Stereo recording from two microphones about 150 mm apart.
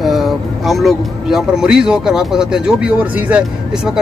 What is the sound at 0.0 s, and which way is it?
Speech, centre (ahead or behind).